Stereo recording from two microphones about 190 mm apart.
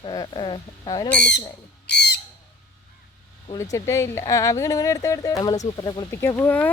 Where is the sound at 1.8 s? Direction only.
60° left (ahead or behind).